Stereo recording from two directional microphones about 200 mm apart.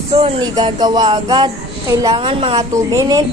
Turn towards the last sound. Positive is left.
turn(degrees=-15)  # may be behind; listen again after turning